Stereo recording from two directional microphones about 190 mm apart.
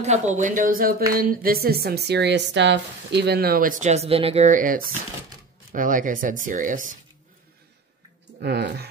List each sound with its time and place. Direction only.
0.0 s speech: 35° right (ahead or behind)
8.4 s speech: 65° right (ahead or behind)